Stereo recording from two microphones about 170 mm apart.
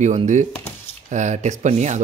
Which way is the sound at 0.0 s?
45° right (ahead or behind).